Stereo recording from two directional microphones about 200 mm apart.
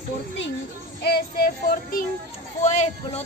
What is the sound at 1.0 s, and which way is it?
Child singing, 55° left (ahead or behind).